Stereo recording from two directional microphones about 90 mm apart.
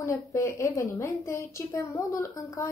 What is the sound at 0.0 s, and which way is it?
A woman's voice, 35° left (ahead or behind).